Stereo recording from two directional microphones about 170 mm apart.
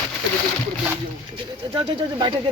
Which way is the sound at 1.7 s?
30° right (ahead or behind).